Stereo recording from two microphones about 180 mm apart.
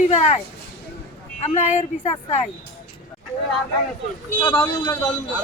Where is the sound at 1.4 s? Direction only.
40° left (ahead or behind).